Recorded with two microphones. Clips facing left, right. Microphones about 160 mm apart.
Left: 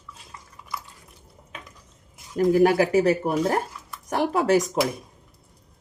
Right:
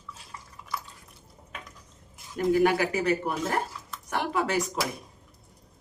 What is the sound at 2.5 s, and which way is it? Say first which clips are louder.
Speech: left 6 dB; 45° left (ahead or behind).